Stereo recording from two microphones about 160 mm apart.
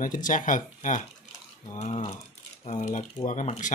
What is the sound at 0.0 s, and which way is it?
Speech, 55° left (ahead or behind).